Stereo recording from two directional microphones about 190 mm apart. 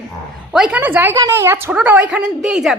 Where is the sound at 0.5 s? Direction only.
5° right (ahead or behind).